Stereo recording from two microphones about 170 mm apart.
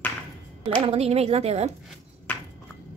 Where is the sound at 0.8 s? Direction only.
35° right (ahead or behind).